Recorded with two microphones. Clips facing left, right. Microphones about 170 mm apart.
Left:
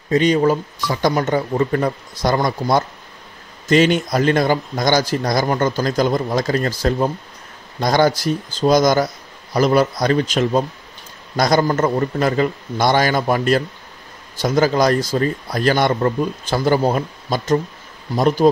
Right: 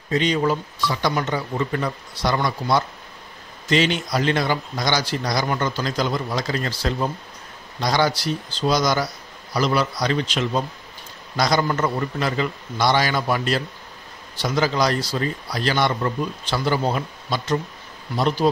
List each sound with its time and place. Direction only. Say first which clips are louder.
0.1 s speech: left 6 dB; 45° left (ahead or behind)